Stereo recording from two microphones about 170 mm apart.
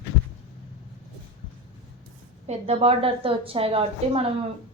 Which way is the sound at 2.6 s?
35° right (ahead or behind).